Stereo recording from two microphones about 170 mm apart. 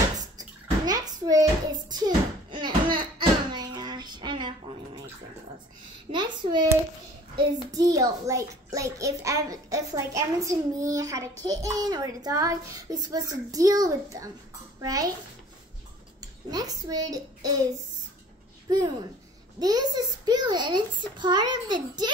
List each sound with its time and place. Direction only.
0.2 s bathtub: 20° right (ahead or behind)
2.5 s a sound: 30° right (ahead or behind)
6.1 s a child's voice: 25° right (ahead or behind)
16.2 s a child's voice: 20° right (ahead or behind)
19.6 s a child's voice: 25° right (ahead or behind)